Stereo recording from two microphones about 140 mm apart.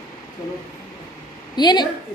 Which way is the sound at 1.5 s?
30° left (ahead or behind).